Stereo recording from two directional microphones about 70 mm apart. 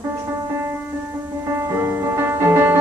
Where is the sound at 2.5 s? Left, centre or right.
Right.